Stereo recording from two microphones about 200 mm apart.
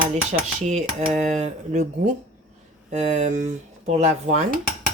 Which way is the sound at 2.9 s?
35° right (ahead or behind).